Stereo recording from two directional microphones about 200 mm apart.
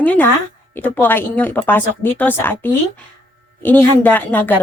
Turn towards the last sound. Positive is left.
turn(degrees=10)  # may be behind; listen again after turning